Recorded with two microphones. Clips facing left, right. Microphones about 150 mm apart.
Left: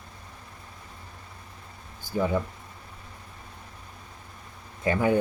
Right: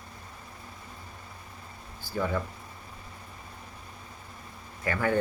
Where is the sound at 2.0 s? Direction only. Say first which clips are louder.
Left 4 dB; 15° left (ahead or behind).